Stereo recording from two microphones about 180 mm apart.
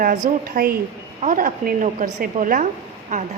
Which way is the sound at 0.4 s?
55° right (ahead or behind).